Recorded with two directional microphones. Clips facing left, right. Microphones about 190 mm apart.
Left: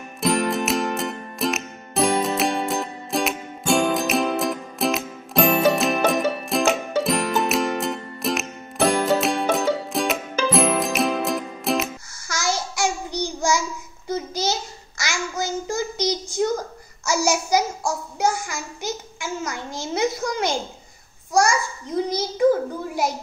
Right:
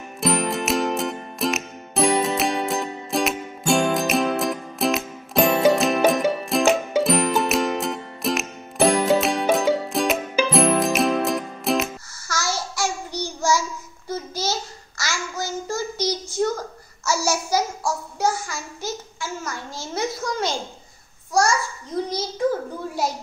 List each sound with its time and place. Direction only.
0.2 s music: centre (ahead or behind)
12.3 s child singing: 15° left (ahead or behind)
21.3 s babbling: 15° left (ahead or behind)